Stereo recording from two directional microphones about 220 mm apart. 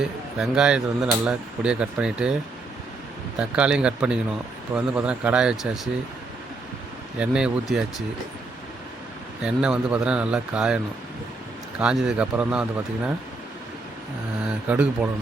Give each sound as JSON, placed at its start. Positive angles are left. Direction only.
{"t": 0.0, "sound": "a man's voice", "side_deg": -5}
{"t": 3.3, "sound": "speech", "side_deg": -5}
{"t": 7.2, "sound": "speech", "side_deg": -5}
{"t": 9.4, "sound": "speech", "side_deg": -5}
{"t": 11.8, "sound": "speech", "side_deg": -5}
{"t": 14.4, "sound": "speech", "side_deg": -5}